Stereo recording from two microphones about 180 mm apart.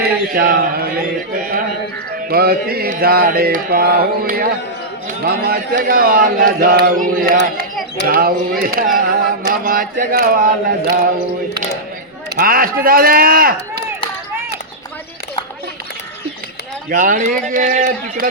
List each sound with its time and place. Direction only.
0.0 s a sound: 55° right (ahead or behind)
2.3 s mantra: 55° right (ahead or behind)
5.2 s speech: 55° right (ahead or behind)
8.0 s mantra: 55° right (ahead or behind)
9.5 s speech: 50° right (ahead or behind)
12.4 s speech: 55° right (ahead or behind)
16.9 s speech: 45° right (ahead or behind)